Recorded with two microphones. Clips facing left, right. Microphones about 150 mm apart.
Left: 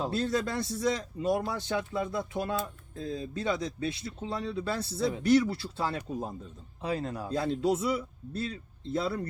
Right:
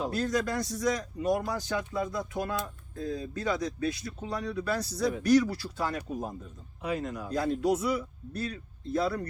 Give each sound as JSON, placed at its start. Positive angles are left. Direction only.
{"t": 0.1, "sound": "speech", "side_deg": 30}